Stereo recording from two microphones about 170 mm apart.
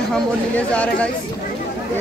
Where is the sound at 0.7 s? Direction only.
5° left (ahead or behind).